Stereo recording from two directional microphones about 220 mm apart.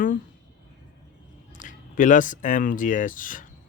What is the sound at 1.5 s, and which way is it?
Speech, 35° left (ahead or behind).